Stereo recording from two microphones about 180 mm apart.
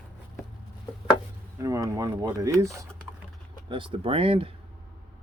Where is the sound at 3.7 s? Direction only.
30° right (ahead or behind).